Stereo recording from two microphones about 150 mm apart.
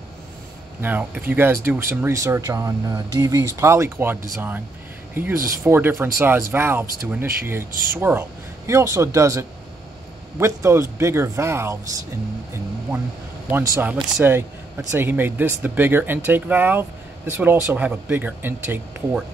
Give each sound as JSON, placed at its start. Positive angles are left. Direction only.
{"t": 0.7, "sound": "speech", "side_deg": -15}
{"t": 13.5, "sound": "speech", "side_deg": -15}